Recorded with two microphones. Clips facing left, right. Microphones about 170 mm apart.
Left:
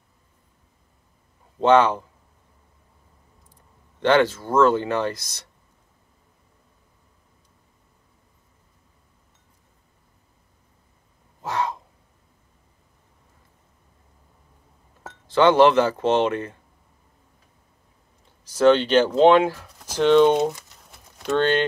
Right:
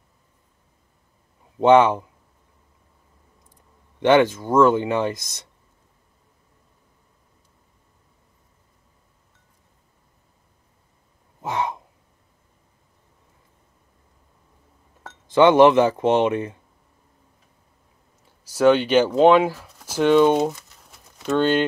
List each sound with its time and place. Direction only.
1.6 s speech: 20° right (ahead or behind)
4.0 s speech: 15° right (ahead or behind)
11.4 s gasp: 20° right (ahead or behind)
15.3 s speech: 20° right (ahead or behind)
18.4 s speech: 10° right (ahead or behind)